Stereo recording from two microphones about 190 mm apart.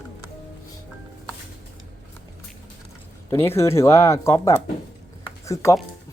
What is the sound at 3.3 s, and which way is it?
Speech, 15° left (ahead or behind).